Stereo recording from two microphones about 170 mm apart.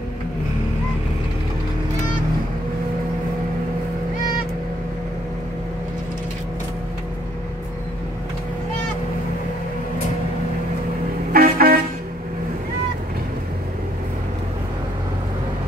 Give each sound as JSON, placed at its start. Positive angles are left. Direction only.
{"t": 11.3, "sound": "vehicle", "side_deg": -60}